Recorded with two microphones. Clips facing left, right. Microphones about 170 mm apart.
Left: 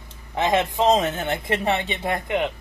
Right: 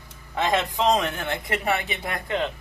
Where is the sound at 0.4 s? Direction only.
20° left (ahead or behind).